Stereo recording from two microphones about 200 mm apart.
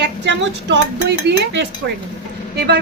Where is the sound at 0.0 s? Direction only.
60° right (ahead or behind).